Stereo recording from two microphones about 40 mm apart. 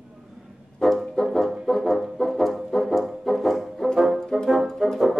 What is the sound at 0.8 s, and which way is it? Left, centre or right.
Music, centre.